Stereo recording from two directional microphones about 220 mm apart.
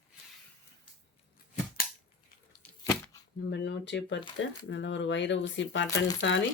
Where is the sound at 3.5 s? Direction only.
50° left (ahead or behind).